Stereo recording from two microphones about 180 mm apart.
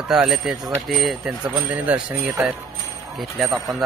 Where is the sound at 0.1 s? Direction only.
Centre (ahead or behind).